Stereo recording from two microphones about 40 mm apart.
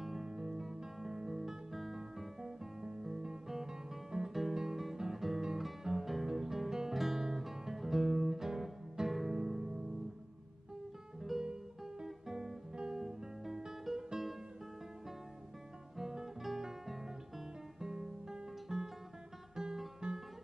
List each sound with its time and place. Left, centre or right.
0.0 s music: centre
0.9 s guitar: centre
4.3 s guitar: centre
6.2 s music: centre
7.0 s guitar: centre
8.2 s music: centre
11.4 s guitar: centre
16.0 s guitar: centre
20.0 s music: centre